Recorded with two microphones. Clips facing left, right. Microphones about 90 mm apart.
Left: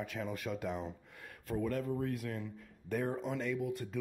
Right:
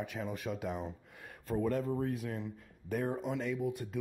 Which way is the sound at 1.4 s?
30° right (ahead or behind).